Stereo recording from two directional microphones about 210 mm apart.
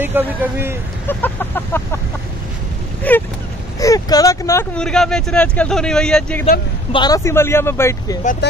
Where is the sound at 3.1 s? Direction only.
5° left (ahead or behind).